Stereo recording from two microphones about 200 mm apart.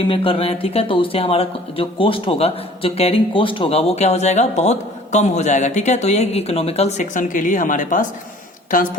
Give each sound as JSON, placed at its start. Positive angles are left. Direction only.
{"t": 0.0, "sound": "a woman's voice", "side_deg": 25}